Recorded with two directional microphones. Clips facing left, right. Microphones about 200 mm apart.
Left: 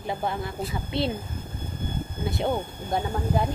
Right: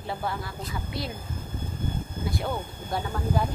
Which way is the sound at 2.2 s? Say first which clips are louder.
Left 5 dB; 25° left (ahead or behind).